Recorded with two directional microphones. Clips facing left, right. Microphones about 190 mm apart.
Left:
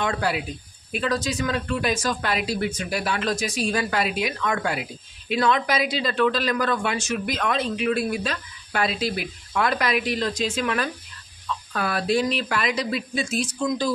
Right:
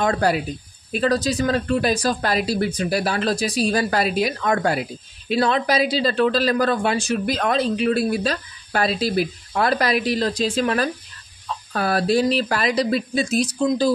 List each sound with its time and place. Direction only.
0.0 s speech: 40° right (ahead or behind)